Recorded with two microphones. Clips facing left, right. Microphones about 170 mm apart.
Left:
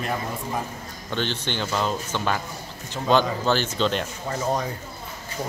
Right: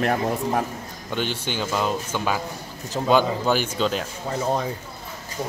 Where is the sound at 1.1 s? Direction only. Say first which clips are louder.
Right 1 dB; 10° right (ahead or behind).